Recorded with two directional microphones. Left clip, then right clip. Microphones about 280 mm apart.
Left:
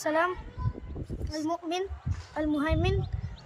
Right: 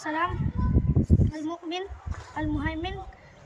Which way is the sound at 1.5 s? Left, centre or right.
Centre.